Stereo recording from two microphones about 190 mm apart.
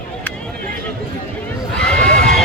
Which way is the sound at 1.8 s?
5° left (ahead or behind).